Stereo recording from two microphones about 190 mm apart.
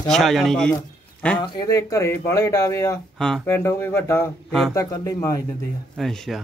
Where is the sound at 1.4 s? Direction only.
20° left (ahead or behind).